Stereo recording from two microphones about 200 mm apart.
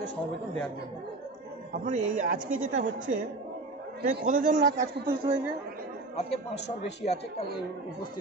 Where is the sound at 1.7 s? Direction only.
40° right (ahead or behind).